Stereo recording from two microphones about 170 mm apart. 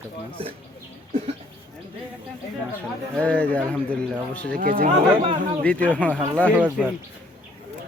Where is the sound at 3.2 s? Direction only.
10° left (ahead or behind).